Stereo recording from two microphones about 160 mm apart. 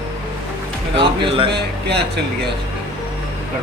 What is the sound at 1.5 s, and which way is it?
Speech, 90° right.